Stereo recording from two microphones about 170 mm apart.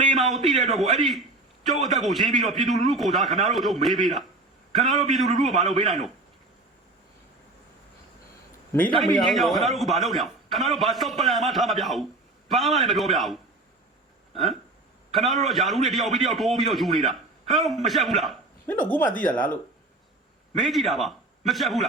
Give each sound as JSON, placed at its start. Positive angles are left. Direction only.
{"t": 0.2, "sound": "a sound", "side_deg": 0}
{"t": 0.7, "sound": "a man's voice", "side_deg": 0}
{"t": 5.5, "sound": "a man's voice", "side_deg": -45}
{"t": 9.0, "sound": "a man's voice", "side_deg": 0}
{"t": 19.0, "sound": "speech", "side_deg": 50}
{"t": 20.6, "sound": "a man's voice", "side_deg": 0}